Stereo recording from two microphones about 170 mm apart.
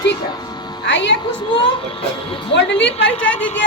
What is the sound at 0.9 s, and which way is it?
Speech, 90° left.